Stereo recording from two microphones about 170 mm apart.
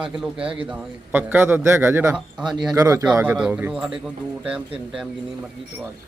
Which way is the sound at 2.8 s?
20° right (ahead or behind).